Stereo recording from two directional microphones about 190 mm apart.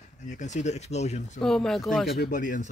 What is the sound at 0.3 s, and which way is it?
Speech, 40° left (ahead or behind).